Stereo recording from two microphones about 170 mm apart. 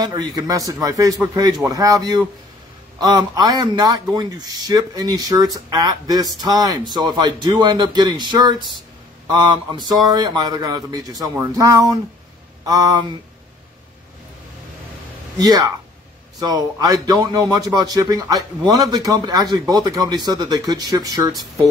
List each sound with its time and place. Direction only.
0.0 s speech: 25° right (ahead or behind)
15.3 s speech: 20° right (ahead or behind)